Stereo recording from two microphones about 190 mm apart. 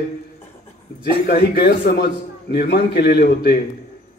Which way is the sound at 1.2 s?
55° left (ahead or behind).